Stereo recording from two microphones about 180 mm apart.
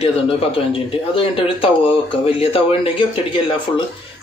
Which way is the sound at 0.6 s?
30° left (ahead or behind).